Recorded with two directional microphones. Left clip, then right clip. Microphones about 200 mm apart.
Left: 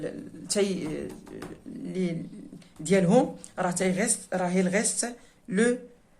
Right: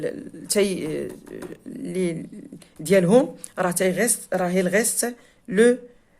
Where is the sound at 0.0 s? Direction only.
40° right (ahead or behind).